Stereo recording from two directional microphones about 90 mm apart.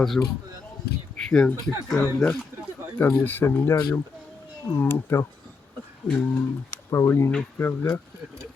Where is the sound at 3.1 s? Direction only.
25° left (ahead or behind).